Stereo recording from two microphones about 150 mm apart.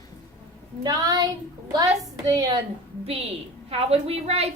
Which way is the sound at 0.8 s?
25° right (ahead or behind).